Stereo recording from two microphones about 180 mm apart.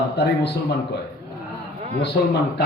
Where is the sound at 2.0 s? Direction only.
70° left (ahead or behind).